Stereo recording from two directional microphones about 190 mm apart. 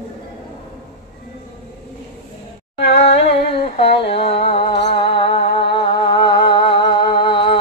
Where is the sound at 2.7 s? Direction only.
30° left (ahead or behind).